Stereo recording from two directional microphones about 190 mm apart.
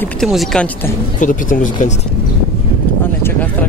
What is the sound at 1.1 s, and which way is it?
Speech, 45° left (ahead or behind).